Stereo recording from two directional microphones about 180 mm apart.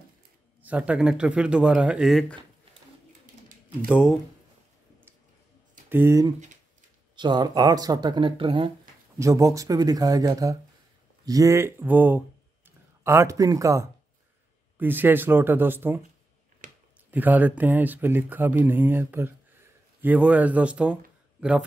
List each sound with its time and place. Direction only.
0.6 s speech: 10° right (ahead or behind)
3.8 s speech: 5° right (ahead or behind)
5.9 s speech: 15° right (ahead or behind); by 8.7 s 30° right (ahead or behind)
9.2 s speech: 20° right (ahead or behind)
17.1 s speech: 10° right (ahead or behind)